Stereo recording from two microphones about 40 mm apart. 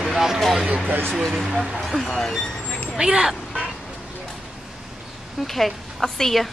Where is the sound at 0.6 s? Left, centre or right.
Right.